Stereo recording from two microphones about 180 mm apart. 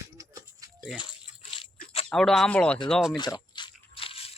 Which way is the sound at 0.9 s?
30° left (ahead or behind).